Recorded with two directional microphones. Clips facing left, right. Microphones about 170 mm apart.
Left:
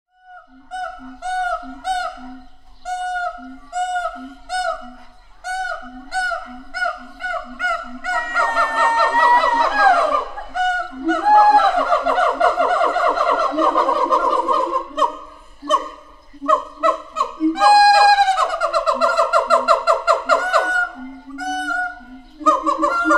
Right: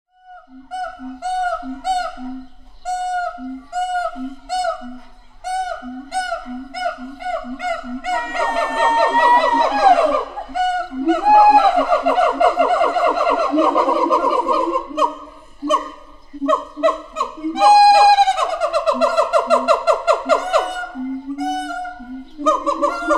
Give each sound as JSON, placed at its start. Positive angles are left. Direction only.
{"t": 0.7, "sound": "honk", "side_deg": -10}
{"t": 2.8, "sound": "owl", "side_deg": -15}
{"t": 5.4, "sound": "honk", "side_deg": -15}
{"t": 10.5, "sound": "a sound", "side_deg": -10}
{"t": 16.4, "sound": "a sound", "side_deg": -20}
{"t": 21.4, "sound": "music", "side_deg": -20}
{"t": 22.4, "sound": "honk", "side_deg": -20}